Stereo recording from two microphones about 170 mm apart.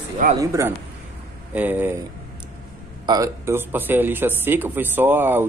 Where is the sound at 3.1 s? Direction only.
15° right (ahead or behind).